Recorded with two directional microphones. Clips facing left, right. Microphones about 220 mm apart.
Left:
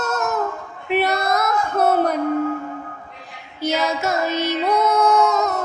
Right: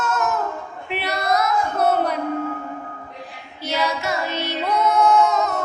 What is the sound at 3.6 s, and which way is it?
Child singing, 45° left (ahead or behind).